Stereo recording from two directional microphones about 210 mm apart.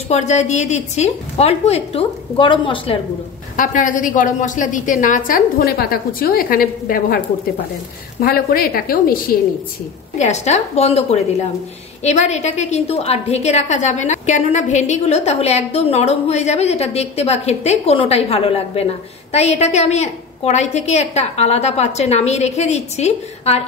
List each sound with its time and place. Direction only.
0.1 s a woman's voice: 35° left (ahead or behind)
3.5 s a woman's voice: 40° left (ahead or behind)
8.2 s a woman's voice: 45° left (ahead or behind)
10.1 s a woman's voice: 35° left (ahead or behind)